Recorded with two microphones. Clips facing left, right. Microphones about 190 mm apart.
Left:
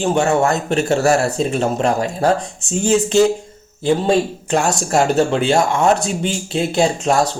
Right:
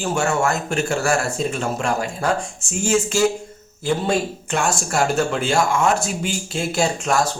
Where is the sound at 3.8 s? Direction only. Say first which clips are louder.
Left 5 dB; 35° left (ahead or behind).